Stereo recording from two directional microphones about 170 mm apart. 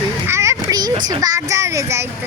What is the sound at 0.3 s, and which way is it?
A child's voice, 15° right (ahead or behind).